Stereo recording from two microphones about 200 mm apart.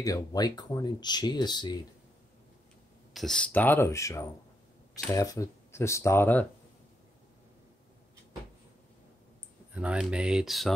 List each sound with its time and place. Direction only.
0.0 s speech: 20° left (ahead or behind)
3.1 s speech: centre (ahead or behind)
9.8 s speech: 5° right (ahead or behind)